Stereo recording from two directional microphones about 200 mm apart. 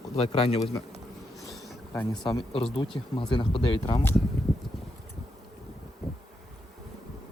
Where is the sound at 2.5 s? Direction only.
30° left (ahead or behind).